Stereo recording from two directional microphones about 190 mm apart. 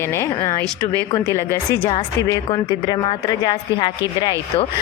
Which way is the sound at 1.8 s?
25° left (ahead or behind).